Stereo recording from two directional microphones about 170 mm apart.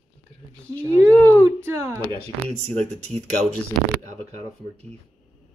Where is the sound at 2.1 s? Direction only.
35° right (ahead or behind).